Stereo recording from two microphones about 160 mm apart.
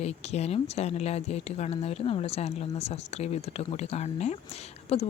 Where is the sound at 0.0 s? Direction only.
40° left (ahead or behind).